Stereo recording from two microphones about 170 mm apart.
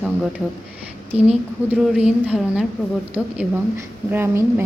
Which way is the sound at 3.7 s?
15° right (ahead or behind).